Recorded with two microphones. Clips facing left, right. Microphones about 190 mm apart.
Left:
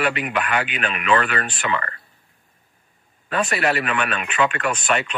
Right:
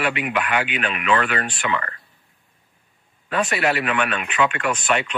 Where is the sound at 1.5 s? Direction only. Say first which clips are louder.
Even; 40° left (ahead or behind).